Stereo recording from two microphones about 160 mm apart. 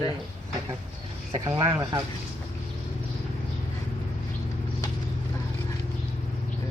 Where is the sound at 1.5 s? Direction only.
20° right (ahead or behind).